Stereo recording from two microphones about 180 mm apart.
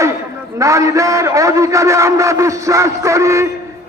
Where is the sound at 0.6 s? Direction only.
15° right (ahead or behind).